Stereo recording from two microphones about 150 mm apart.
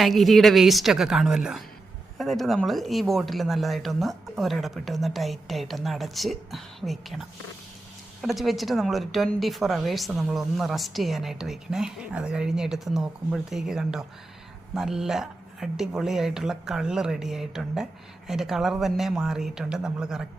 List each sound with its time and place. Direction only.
0.0 s a woman's voice: centre (ahead or behind)